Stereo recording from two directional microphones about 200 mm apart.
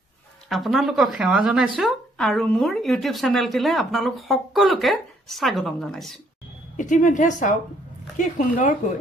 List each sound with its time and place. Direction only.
0.4 s a woman's voice: centre (ahead or behind)
6.7 s a woman's voice: 40° left (ahead or behind)